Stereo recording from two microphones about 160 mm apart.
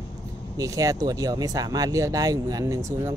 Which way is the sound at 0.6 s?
20° right (ahead or behind).